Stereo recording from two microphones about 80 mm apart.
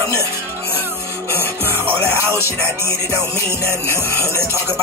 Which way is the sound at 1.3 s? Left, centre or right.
Right.